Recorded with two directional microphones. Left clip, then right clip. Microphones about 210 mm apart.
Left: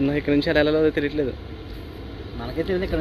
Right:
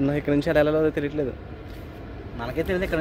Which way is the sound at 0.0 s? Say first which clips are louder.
Left 2 dB; 25° right (ahead or behind).